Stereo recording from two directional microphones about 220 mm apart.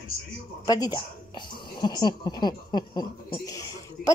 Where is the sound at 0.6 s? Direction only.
15° left (ahead or behind).